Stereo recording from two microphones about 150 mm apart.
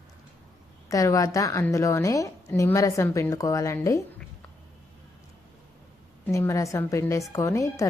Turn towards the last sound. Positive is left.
turn(degrees=20)  # may be behind; listen again after turning